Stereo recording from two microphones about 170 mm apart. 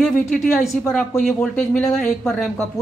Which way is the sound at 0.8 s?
15° left (ahead or behind).